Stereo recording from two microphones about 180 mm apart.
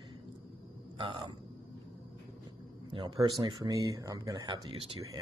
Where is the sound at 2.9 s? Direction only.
25° right (ahead or behind).